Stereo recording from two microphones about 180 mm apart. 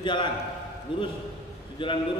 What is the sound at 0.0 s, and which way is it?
A man's voice, 25° left (ahead or behind).